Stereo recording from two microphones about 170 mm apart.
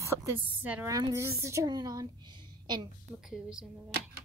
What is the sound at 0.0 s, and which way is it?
A woman's voice, 15° right (ahead or behind).